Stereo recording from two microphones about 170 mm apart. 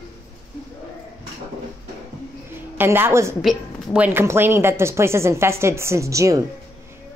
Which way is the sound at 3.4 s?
Centre (ahead or behind).